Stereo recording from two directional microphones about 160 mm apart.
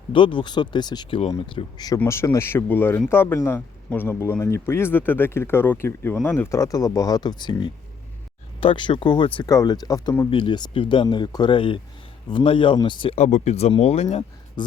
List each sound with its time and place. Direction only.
0.1 s speech: 30° left (ahead or behind)
8.6 s speech: 30° left (ahead or behind)
13.2 s speech: 45° left (ahead or behind)